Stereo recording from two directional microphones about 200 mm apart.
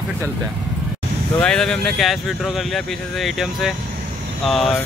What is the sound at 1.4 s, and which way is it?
Speech, 5° left (ahead or behind).